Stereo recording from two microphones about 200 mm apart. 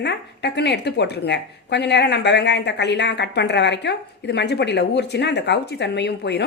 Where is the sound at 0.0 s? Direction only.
60° left (ahead or behind).